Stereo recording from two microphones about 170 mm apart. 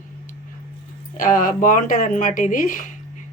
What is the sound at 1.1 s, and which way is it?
Speech, 55° left (ahead or behind).